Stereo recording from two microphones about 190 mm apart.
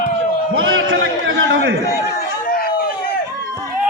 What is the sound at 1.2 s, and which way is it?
Speech, 75° right (ahead or behind).